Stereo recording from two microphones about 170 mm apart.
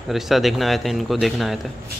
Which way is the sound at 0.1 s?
Centre (ahead or behind).